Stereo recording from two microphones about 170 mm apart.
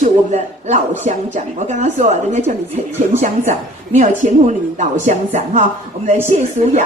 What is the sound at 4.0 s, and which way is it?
A woman's voice, 45° right (ahead or behind).